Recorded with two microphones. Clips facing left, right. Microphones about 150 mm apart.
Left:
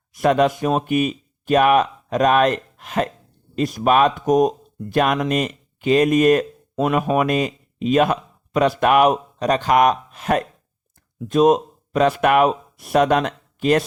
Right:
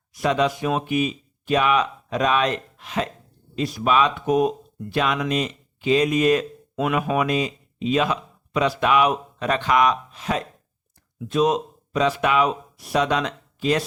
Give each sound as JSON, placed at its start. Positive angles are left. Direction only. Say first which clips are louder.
{"t": 0.1, "sound": "speech", "louder": "left 5 dB", "side_deg": 50}
{"t": 6.7, "sound": "speech", "louder": "left 3 dB", "side_deg": 40}